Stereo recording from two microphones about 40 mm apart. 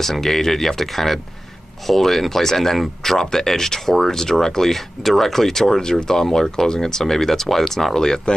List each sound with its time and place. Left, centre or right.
0.0 s speech: centre